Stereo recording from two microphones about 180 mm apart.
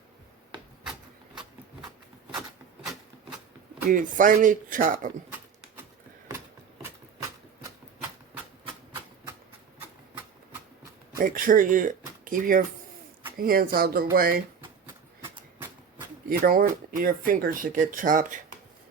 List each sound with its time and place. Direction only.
3.8 s speech: 50° right (ahead or behind)
11.2 s speech: 50° right (ahead or behind)
16.5 s speech: 50° right (ahead or behind)